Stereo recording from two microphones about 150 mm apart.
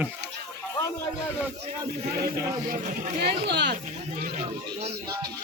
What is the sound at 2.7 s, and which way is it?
Speech, 60° right (ahead or behind).